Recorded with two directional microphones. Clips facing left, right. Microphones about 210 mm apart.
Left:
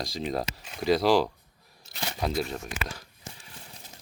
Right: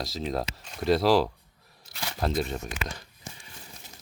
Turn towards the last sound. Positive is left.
turn(degrees=5)  # may be behind; listen again after turning